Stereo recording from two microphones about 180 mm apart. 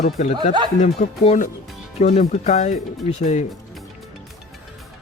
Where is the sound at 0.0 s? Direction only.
40° left (ahead or behind).